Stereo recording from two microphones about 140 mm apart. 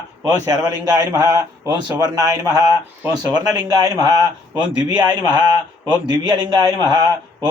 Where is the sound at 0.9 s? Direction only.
25° right (ahead or behind).